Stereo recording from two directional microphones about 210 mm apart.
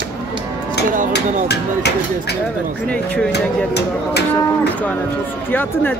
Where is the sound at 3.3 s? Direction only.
50° left (ahead or behind).